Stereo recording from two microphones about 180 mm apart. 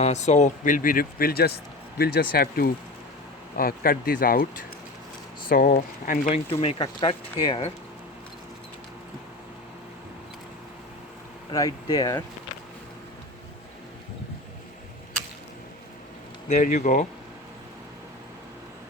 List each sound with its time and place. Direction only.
0.0 s speech: 40° left (ahead or behind)
5.5 s speech: 45° left (ahead or behind); by 7.7 s 25° left (ahead or behind)
11.5 s speech: 20° left (ahead or behind)
16.5 s speech: 45° left (ahead or behind)